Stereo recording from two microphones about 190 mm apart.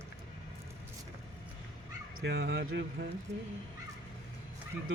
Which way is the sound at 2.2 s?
60° right (ahead or behind).